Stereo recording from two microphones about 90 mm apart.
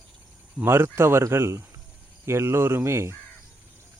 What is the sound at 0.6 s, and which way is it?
Speech, 25° right (ahead or behind).